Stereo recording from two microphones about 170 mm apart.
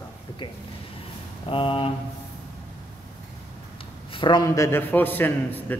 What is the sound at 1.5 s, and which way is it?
Speech, 30° left (ahead or behind).